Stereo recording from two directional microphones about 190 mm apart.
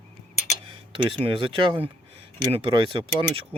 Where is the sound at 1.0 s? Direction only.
30° right (ahead or behind).